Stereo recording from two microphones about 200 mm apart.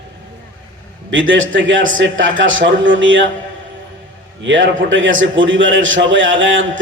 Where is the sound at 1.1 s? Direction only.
70° right (ahead or behind).